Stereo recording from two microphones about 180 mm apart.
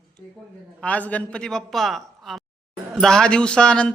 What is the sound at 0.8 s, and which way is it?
A man's voice, 10° left (ahead or behind).